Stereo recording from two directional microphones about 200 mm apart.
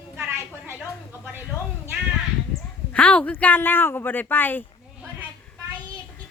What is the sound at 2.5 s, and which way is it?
Speech, 5° left (ahead or behind).